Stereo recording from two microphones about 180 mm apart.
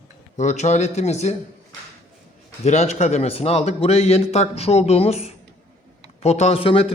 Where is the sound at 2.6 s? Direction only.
40° left (ahead or behind).